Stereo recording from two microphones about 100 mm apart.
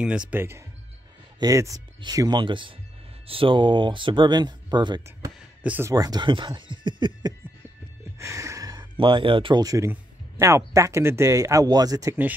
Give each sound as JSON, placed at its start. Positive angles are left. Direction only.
{"t": 0.0, "sound": "speech", "side_deg": -10}
{"t": 0.4, "sound": "speech", "side_deg": -25}
{"t": 2.1, "sound": "speech", "side_deg": -45}
{"t": 5.6, "sound": "speech", "side_deg": -15}
{"t": 5.9, "sound": "speech", "side_deg": -40}
{"t": 8.2, "sound": "music", "side_deg": -30}
{"t": 8.9, "sound": "speech", "side_deg": -60}
{"t": 9.6, "sound": "speech", "side_deg": -35}
{"t": 9.8, "sound": "speech", "side_deg": -25}